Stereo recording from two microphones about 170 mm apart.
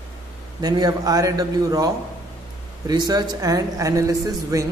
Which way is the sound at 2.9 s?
25° right (ahead or behind).